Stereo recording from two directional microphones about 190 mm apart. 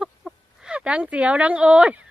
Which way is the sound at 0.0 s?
5° right (ahead or behind).